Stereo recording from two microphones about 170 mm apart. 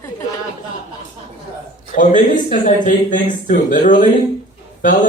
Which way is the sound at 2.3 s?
50° left (ahead or behind).